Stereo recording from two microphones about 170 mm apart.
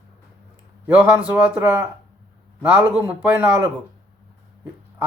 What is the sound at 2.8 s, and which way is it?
Speech, 10° right (ahead or behind).